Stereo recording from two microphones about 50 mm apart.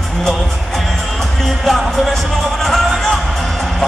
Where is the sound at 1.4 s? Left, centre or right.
Centre.